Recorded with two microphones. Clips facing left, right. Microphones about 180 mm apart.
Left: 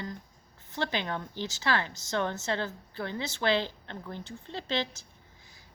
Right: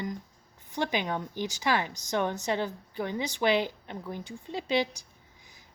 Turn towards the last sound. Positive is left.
turn(degrees=-15)  # may be behind; listen again after turning